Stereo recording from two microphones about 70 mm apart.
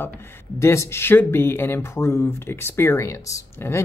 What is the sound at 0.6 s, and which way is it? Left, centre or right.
Speech, left.